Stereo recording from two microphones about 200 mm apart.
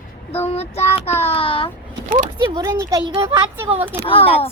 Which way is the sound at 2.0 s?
40° right (ahead or behind).